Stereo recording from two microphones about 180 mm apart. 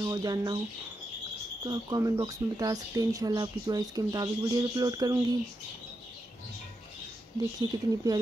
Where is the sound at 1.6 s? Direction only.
20° right (ahead or behind).